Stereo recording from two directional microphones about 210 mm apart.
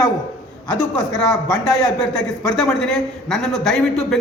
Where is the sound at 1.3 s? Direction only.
20° left (ahead or behind).